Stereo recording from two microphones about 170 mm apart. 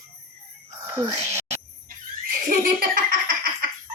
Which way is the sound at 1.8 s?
55° right (ahead or behind).